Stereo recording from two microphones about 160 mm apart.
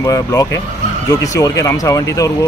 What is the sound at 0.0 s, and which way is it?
A man's voice, 20° left (ahead or behind).